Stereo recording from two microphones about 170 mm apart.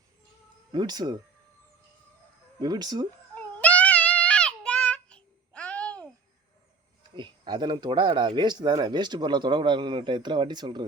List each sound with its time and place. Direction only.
0.7 s speech: 25° right (ahead or behind)
2.6 s speech: 25° right (ahead or behind)
3.3 s child singing: 10° left (ahead or behind)
7.2 s speech: 25° right (ahead or behind)